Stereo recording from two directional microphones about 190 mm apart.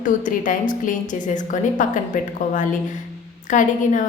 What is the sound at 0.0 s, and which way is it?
A woman's voice, 45° left (ahead or behind).